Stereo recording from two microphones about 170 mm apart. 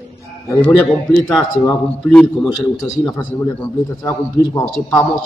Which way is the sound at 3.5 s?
15° left (ahead or behind).